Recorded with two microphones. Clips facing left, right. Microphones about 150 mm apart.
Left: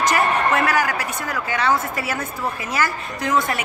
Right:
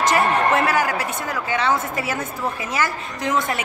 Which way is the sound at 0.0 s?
25° right (ahead or behind).